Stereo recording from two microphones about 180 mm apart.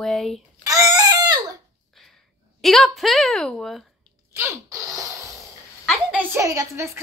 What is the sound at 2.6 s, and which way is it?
A child's voice, centre (ahead or behind).